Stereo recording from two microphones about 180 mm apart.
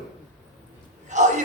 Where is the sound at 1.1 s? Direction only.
40° right (ahead or behind).